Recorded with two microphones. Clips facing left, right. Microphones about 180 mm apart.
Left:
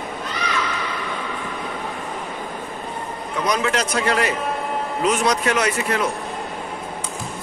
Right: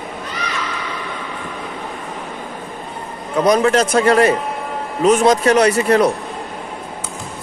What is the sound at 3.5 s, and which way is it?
Speech, 45° right (ahead or behind).